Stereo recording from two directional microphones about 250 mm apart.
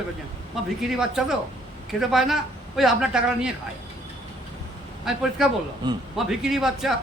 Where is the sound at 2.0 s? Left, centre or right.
Centre.